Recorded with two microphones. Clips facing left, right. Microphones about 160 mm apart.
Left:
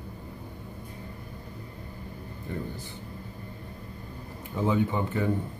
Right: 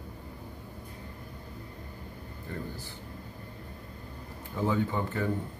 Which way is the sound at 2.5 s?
15° left (ahead or behind).